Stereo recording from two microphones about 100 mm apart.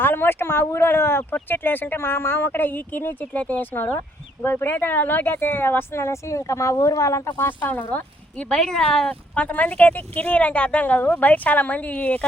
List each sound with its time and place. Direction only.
0.0 s speech: 20° left (ahead or behind)
8.4 s speech: 5° left (ahead or behind)